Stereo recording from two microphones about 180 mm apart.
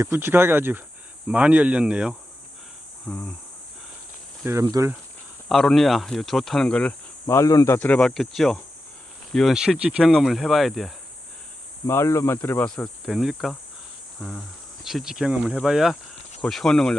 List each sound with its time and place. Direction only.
0.0 s speech: 15° right (ahead or behind)
3.1 s cricket: 10° left (ahead or behind)
4.4 s speech: 20° right (ahead or behind)
5.5 s speech: centre (ahead or behind)
11.9 s cricket: 15° left (ahead or behind); by 14.4 s centre (ahead or behind)
14.8 s speech: centre (ahead or behind)